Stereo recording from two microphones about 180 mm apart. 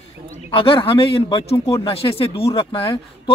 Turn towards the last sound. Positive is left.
turn(degrees=30)  # may be behind; listen again after turning